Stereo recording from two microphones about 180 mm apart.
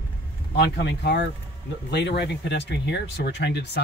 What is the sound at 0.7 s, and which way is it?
Speech, 70° left (ahead or behind).